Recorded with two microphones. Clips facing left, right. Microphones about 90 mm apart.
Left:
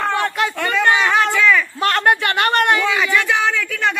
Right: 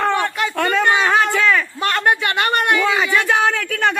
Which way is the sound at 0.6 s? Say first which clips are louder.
Right 1 dB; 40° right (ahead or behind).